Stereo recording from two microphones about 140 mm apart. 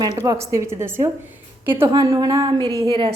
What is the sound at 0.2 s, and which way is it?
A woman's voice, 20° right (ahead or behind).